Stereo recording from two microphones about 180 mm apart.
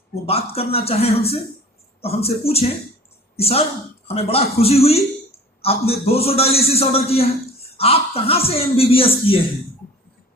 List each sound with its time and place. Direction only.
0.3 s a man's voice: 35° left (ahead or behind)